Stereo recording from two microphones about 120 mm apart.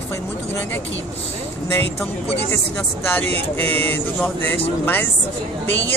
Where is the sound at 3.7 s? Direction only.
15° left (ahead or behind).